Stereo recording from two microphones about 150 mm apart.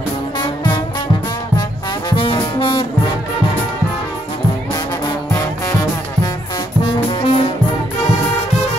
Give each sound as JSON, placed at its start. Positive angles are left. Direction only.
{"t": 2.0, "sound": "brass instrument", "side_deg": 30}
{"t": 5.0, "sound": "music", "side_deg": 25}
{"t": 6.8, "sound": "music", "side_deg": 35}